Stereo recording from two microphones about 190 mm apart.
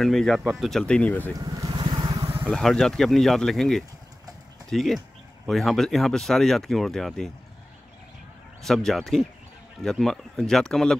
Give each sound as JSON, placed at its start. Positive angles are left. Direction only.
{"t": 0.0, "sound": "speech", "side_deg": 0}
{"t": 1.3, "sound": "vehicle", "side_deg": -20}
{"t": 2.5, "sound": "speech", "side_deg": 5}
{"t": 8.6, "sound": "speech", "side_deg": 0}